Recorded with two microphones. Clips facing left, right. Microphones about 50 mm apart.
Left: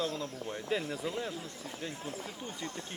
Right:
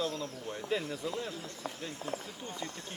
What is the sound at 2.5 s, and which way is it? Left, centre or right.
Speech, centre.